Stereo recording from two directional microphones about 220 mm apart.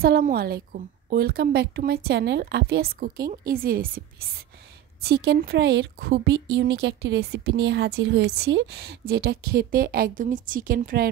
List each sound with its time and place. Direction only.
0.0 s speech: 40° right (ahead or behind)
5.0 s speech: 50° right (ahead or behind)